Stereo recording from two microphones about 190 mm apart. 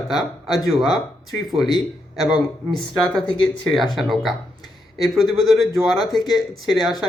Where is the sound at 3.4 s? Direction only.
Centre (ahead or behind).